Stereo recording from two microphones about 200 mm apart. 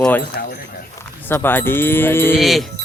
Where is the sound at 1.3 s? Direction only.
10° left (ahead or behind).